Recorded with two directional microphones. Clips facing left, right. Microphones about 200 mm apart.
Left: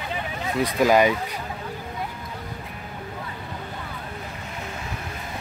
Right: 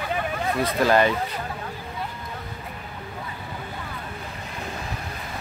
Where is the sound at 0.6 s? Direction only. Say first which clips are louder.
Left 2 dB; 15° left (ahead or behind).